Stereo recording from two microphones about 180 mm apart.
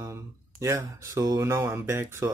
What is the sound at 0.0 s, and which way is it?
Speech, 15° right (ahead or behind).